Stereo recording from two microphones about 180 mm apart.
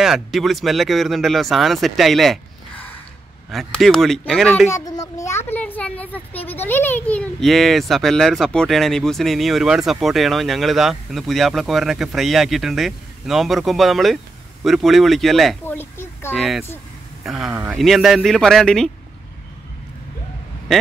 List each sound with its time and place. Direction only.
0.0 s speech: centre (ahead or behind)
4.6 s a sound: 20° left (ahead or behind)
6.4 s speech: 10° left (ahead or behind)
15.6 s speech: 10° left (ahead or behind)
16.3 s speech: centre (ahead or behind)